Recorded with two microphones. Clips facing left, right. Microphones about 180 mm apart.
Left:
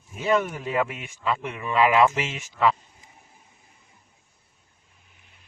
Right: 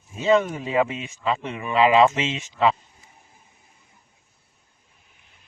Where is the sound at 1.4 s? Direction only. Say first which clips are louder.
Right 2 dB; 20° right (ahead or behind).